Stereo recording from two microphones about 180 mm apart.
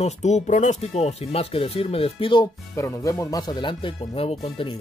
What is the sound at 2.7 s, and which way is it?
Speech, 15° left (ahead or behind).